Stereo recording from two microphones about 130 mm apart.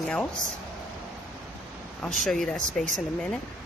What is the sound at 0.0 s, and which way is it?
Speech, 5° left (ahead or behind).